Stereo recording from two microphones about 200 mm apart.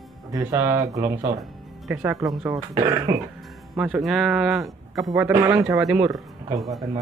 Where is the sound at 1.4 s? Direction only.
Centre (ahead or behind).